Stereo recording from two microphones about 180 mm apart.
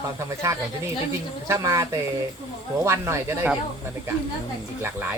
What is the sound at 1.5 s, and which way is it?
Speech, 20° right (ahead or behind).